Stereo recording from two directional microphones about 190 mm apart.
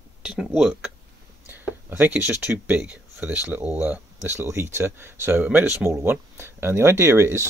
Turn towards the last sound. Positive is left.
turn(degrees=-15)  # may be behind; listen again after turning